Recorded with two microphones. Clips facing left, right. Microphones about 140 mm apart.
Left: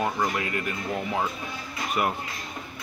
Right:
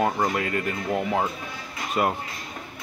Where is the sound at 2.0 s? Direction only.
30° right (ahead or behind).